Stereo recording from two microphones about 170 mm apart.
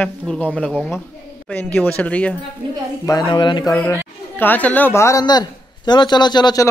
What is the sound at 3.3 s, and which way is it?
Speech, 25° left (ahead or behind).